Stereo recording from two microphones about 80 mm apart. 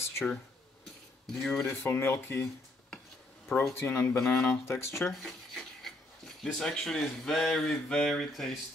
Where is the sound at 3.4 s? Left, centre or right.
Centre.